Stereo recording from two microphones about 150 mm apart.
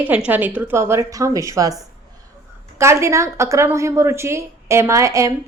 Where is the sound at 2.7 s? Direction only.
20° right (ahead or behind).